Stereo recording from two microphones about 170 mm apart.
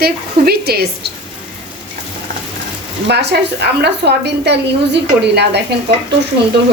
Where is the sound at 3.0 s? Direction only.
80° right.